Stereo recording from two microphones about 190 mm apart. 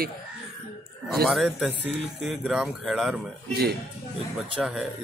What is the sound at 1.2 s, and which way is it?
Speech, centre (ahead or behind).